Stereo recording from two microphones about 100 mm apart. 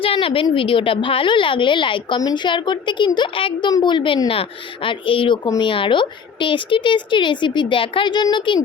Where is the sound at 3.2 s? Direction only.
60° left (ahead or behind).